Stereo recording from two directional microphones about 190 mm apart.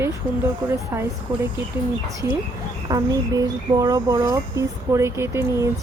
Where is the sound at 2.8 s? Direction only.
20° right (ahead or behind).